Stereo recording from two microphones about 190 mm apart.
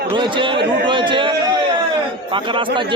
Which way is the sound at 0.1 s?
25° right (ahead or behind).